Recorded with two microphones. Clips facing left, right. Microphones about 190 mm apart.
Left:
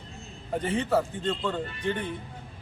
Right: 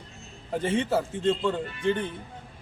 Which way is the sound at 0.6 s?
25° right (ahead or behind).